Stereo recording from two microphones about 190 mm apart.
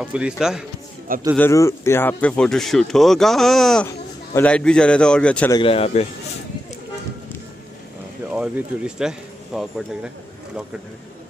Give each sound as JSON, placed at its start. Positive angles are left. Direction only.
{"t": 0.0, "sound": "speech", "side_deg": -5}
{"t": 1.3, "sound": "speech", "side_deg": 15}
{"t": 3.8, "sound": "speech", "side_deg": 10}
{"t": 5.5, "sound": "speech", "side_deg": 30}
{"t": 8.3, "sound": "speech", "side_deg": -5}